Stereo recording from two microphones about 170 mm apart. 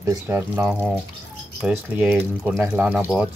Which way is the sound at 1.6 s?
10° right (ahead or behind).